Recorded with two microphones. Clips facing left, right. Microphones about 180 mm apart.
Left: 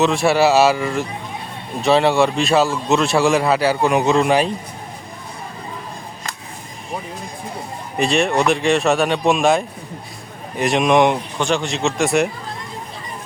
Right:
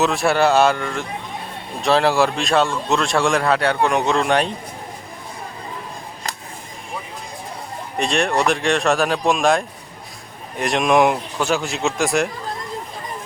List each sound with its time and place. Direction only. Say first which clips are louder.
0.0 s a man's voice: left 2 dB; centre (ahead or behind)
7.9 s a man's voice: left 2 dB; centre (ahead or behind)